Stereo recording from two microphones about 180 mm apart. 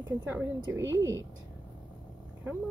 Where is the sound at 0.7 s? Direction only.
90° right.